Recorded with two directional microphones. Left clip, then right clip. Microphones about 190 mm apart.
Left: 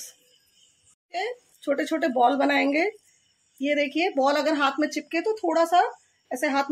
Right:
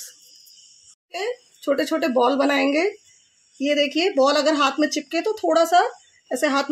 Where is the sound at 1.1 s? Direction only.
30° right (ahead or behind).